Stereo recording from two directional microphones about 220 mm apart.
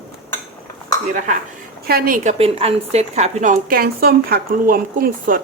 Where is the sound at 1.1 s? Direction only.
35° right (ahead or behind).